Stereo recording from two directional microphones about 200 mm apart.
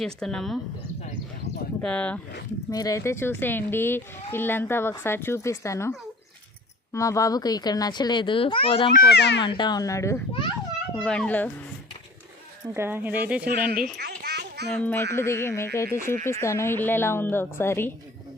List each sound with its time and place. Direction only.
0.0 s speech: 5° left (ahead or behind)
1.8 s speech: 5° left (ahead or behind)
2.6 s speech: 15° left (ahead or behind)
6.9 s a child's voice: 15° left (ahead or behind)
8.9 s a child's voice: 50° left (ahead or behind)
9.4 s a child's voice: 25° left (ahead or behind); by 11.5 s 5° left (ahead or behind)
12.7 s speech: 10° right (ahead or behind)
13.7 s a sound: 55° right (ahead or behind)
14.7 s speech: 10° left (ahead or behind)